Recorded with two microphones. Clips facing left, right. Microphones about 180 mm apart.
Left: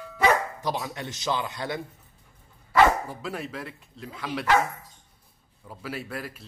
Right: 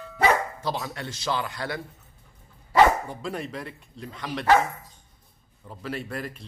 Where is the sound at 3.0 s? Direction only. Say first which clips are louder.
Right 1 dB; 5° left (ahead or behind).